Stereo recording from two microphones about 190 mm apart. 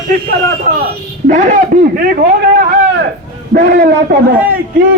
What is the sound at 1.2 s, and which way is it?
Speech, 40° right (ahead or behind).